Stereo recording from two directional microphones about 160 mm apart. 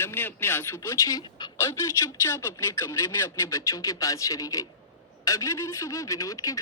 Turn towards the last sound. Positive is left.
turn(degrees=20)  # may be behind; listen again after turning